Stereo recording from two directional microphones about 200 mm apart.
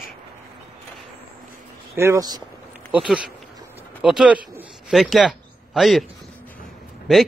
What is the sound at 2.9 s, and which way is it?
A man's voice, 5° right (ahead or behind).